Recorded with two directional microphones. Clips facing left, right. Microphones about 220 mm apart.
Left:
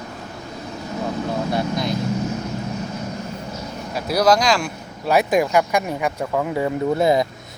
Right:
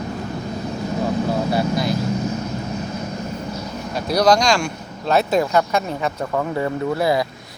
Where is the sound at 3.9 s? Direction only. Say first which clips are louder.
Right 1 dB; 5° left (ahead or behind).